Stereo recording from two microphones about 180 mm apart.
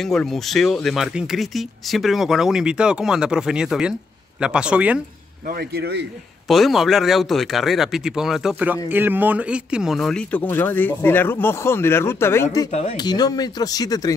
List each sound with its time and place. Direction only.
0.0 s speech: centre (ahead or behind)
5.5 s speech: 60° right (ahead or behind)
6.4 s speech: centre (ahead or behind); by 14.1 s 20° left (ahead or behind)